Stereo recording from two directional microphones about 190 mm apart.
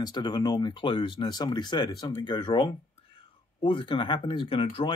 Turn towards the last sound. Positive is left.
turn(degrees=30)  # may be behind; listen again after turning